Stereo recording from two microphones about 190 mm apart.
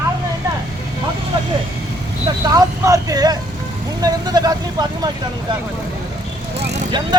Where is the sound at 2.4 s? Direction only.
20° right (ahead or behind).